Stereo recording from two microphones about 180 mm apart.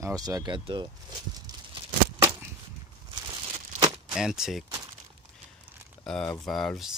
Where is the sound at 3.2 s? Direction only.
30° right (ahead or behind).